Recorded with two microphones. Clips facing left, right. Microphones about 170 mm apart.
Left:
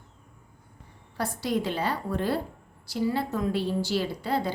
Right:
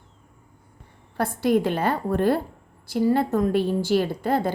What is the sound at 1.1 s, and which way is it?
A woman's voice, 55° right (ahead or behind).